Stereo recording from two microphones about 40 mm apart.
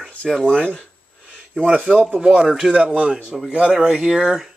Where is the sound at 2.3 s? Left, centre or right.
Right.